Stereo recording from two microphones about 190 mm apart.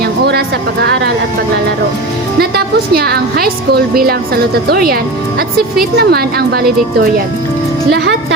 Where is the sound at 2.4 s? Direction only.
55° right (ahead or behind).